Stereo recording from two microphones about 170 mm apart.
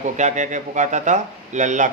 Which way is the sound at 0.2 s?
45° right (ahead or behind).